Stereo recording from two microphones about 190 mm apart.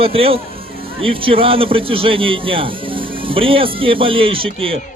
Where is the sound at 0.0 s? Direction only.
30° right (ahead or behind).